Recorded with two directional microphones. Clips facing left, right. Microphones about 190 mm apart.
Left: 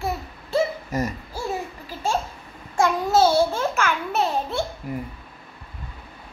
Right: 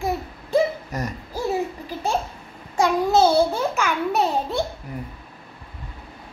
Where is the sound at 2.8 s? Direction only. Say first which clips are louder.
Right 1 dB; 15° right (ahead or behind).